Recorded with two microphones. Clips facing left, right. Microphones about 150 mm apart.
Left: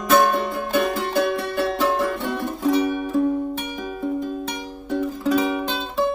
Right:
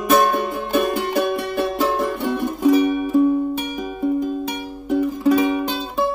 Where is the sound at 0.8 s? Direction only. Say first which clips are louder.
Right 1 dB; 10° right (ahead or behind).